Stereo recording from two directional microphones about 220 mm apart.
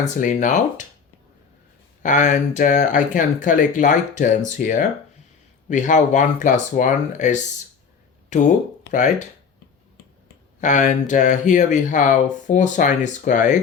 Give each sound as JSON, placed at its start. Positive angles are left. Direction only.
{"t": 0.0, "sound": "speech", "side_deg": 35}
{"t": 2.0, "sound": "speech", "side_deg": 35}
{"t": 10.6, "sound": "speech", "side_deg": 35}